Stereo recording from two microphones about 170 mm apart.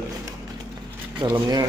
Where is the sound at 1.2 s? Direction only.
25° right (ahead or behind).